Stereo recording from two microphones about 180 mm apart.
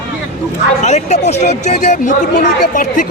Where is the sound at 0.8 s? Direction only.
40° left (ahead or behind).